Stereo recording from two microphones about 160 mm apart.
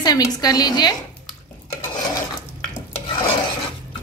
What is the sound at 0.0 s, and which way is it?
Speech, 25° left (ahead or behind).